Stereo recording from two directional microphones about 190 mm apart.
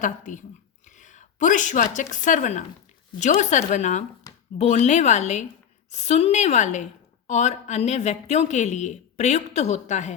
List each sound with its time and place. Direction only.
0.0 s speech: 40° left (ahead or behind)
0.9 s a sound: 40° left (ahead or behind)
2.2 s a woman's voice: 40° left (ahead or behind)